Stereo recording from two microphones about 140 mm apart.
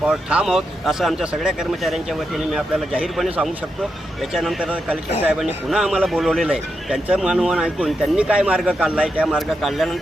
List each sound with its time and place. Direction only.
0.1 s speech: 5° right (ahead or behind)